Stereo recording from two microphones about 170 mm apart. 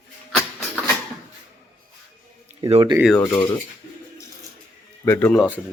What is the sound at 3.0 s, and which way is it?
Speech, 5° left (ahead or behind).